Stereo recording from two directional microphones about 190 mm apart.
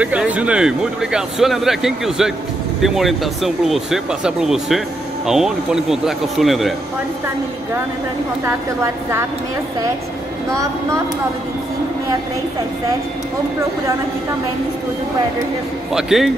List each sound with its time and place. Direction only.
0.0 s speech: 5° right (ahead or behind)
10.5 s a woman's voice: 15° right (ahead or behind)
15.9 s speech: centre (ahead or behind)